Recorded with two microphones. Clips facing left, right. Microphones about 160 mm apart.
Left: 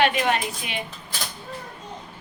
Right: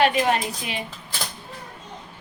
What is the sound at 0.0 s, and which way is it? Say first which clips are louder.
Speech: right 1 dB; 35° right (ahead or behind).